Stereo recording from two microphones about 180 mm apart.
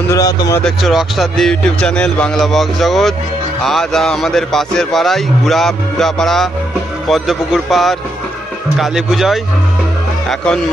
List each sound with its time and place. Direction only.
0.1 s speech: 20° left (ahead or behind)
0.7 s a man's voice: centre (ahead or behind)